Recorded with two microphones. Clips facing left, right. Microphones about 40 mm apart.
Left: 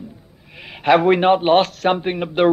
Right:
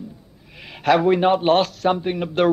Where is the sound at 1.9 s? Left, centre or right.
Left.